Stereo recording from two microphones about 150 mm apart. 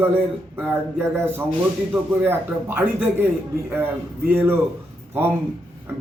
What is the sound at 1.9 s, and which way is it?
Speech, 15° right (ahead or behind).